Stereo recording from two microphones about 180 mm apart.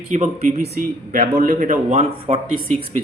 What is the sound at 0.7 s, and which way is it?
Speech, 50° right (ahead or behind).